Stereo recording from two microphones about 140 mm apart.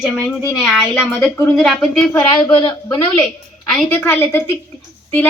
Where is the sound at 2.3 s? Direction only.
35° left (ahead or behind).